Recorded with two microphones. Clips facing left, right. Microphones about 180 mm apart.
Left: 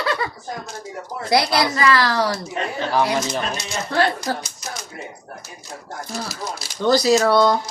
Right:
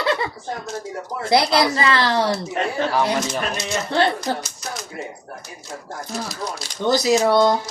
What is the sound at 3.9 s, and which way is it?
Speech, 25° right (ahead or behind).